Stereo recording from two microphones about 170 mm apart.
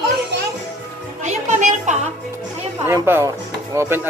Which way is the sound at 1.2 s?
45° right (ahead or behind).